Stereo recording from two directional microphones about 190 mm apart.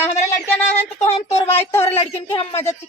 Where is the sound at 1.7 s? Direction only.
10° left (ahead or behind).